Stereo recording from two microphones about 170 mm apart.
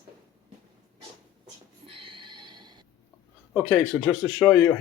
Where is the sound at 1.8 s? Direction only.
30° right (ahead or behind).